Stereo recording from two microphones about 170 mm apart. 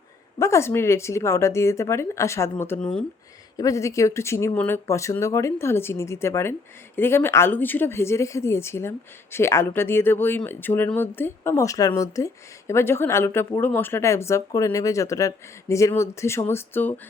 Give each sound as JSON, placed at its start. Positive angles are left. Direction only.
{"t": 0.3, "sound": "speech", "side_deg": 15}